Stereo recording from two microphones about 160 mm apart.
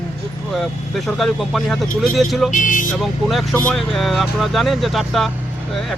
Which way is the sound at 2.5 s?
55° left (ahead or behind).